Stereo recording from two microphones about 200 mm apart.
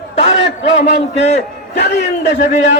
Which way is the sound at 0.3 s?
65° left (ahead or behind).